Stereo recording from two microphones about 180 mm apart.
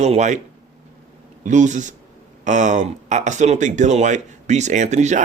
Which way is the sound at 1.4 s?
40° right (ahead or behind).